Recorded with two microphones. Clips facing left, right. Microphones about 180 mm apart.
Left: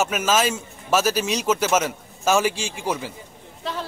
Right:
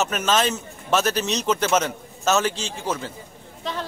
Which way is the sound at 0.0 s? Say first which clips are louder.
Left 1 dB; 5° left (ahead or behind).